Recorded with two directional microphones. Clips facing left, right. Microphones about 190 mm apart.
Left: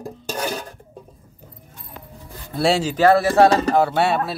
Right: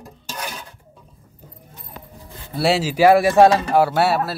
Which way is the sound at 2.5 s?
Centre (ahead or behind).